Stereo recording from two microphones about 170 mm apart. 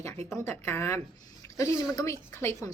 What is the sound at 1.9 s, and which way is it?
Speech, 15° left (ahead or behind).